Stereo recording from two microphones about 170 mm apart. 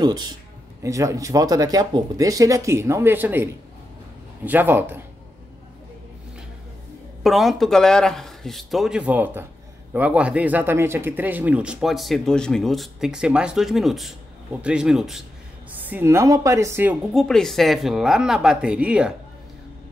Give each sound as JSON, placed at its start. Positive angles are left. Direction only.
{"t": 0.0, "sound": "speech", "side_deg": -25}
{"t": 4.5, "sound": "speech", "side_deg": -10}
{"t": 7.2, "sound": "speech", "side_deg": 0}